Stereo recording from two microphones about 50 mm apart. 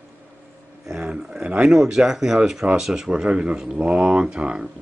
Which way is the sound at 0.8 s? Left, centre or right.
Centre.